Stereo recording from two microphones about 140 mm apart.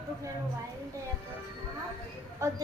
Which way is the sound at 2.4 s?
20° right (ahead or behind).